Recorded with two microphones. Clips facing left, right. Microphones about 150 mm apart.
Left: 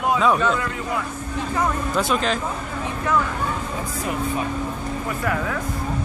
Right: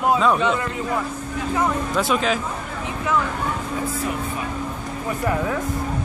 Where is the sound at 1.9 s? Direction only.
Centre (ahead or behind).